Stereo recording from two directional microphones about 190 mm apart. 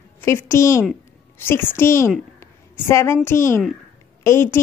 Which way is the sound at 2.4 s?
15° left (ahead or behind).